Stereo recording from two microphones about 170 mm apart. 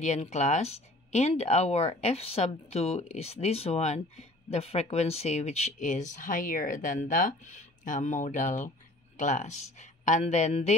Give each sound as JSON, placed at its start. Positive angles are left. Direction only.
{"t": 0.0, "sound": "speech", "side_deg": 45}